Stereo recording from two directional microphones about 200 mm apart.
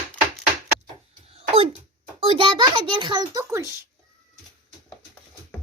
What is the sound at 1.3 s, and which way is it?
Cough, 30° right (ahead or behind).